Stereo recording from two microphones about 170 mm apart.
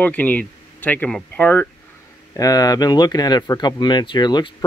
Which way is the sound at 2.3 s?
20° left (ahead or behind).